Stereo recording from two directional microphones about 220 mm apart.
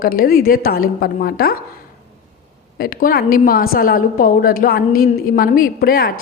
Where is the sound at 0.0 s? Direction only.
40° left (ahead or behind).